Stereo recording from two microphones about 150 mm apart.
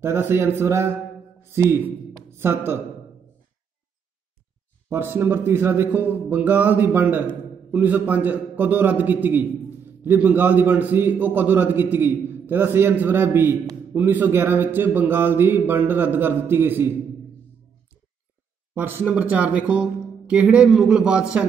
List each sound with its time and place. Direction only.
0.0 s a man's voice: 15° right (ahead or behind)
4.8 s a man's voice: 15° right (ahead or behind)
18.8 s a man's voice: 15° right (ahead or behind)